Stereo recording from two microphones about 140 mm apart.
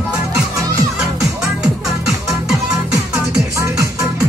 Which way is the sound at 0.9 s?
5° right (ahead or behind).